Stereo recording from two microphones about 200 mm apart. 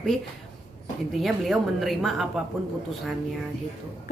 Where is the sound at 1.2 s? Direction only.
Centre (ahead or behind).